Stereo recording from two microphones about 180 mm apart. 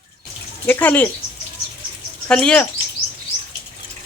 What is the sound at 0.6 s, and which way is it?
Speech, 10° left (ahead or behind).